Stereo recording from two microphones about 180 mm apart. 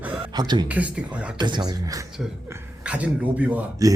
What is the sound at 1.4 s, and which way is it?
Speech, 25° right (ahead or behind).